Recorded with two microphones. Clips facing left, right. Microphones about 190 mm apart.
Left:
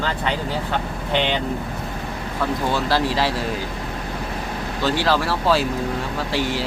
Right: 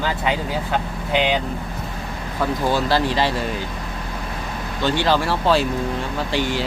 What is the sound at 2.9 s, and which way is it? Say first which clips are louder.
Speech: right 1 dB; centre (ahead or behind).